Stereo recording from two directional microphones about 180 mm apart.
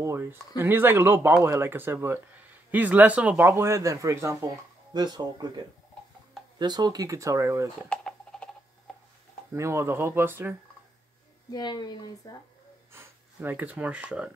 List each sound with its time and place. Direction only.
0.0 s speech: 15° right (ahead or behind)
6.6 s speech: 25° right (ahead or behind)
7.9 s a sound: 5° left (ahead or behind)
9.5 s speech: 15° right (ahead or behind)
11.5 s speech: 25° left (ahead or behind)
12.9 s speech: 10° right (ahead or behind)